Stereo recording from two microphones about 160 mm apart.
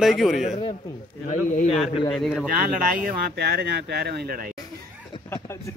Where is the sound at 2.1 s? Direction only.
5° left (ahead or behind).